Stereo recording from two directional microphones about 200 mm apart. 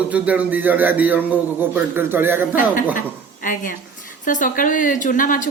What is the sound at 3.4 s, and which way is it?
Speech, 45° left (ahead or behind).